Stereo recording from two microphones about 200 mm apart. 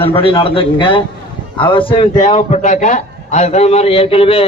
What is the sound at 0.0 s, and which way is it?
A man's voice, 25° left (ahead or behind).